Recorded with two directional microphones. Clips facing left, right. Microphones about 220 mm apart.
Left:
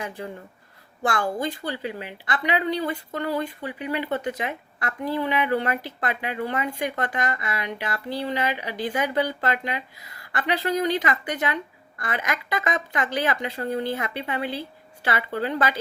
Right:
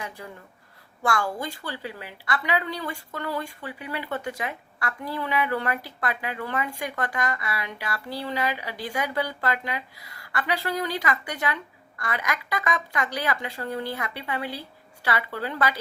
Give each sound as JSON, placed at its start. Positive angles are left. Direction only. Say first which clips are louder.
{"t": 1.0, "sound": "a woman's voice", "louder": "left 2 dB", "side_deg": 20}